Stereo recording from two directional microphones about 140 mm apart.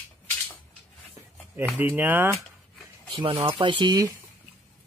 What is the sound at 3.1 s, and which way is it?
Speech, 40° right (ahead or behind).